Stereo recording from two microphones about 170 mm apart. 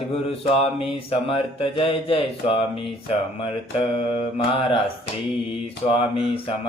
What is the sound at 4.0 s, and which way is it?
Mantra, 30° left (ahead or behind).